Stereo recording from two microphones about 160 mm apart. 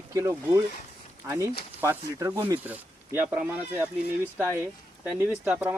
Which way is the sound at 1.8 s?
20° right (ahead or behind).